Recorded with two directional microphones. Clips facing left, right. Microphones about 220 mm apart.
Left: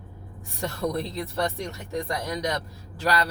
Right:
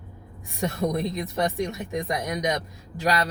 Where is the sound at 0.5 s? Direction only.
15° right (ahead or behind).